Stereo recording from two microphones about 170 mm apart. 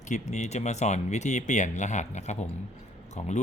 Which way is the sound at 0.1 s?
45° left (ahead or behind).